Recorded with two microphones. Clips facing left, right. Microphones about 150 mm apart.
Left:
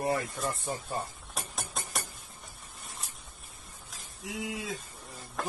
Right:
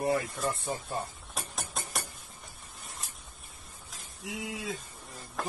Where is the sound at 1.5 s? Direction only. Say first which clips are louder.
Even; centre (ahead or behind).